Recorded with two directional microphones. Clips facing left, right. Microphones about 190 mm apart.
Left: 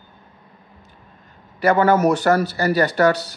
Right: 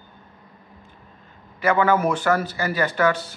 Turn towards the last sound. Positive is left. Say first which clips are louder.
# left 5 dB
turn(degrees=40)  # may be behind; listen again after turning